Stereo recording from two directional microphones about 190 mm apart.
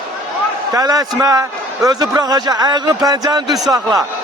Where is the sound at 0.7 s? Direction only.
20° right (ahead or behind).